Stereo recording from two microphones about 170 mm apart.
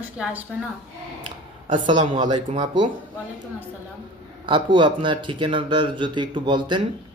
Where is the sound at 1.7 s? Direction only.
30° right (ahead or behind).